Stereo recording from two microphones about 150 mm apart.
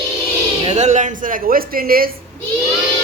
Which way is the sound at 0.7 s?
50° right (ahead or behind).